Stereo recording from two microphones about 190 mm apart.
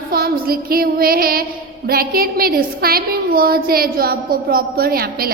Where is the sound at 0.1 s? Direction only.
55° right (ahead or behind).